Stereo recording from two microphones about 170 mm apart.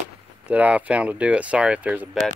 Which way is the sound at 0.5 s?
10° right (ahead or behind).